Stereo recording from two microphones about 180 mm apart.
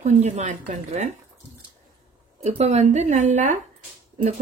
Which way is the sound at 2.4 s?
40° right (ahead or behind).